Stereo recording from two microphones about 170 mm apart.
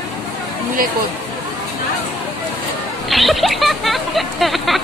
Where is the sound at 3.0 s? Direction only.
Centre (ahead or behind).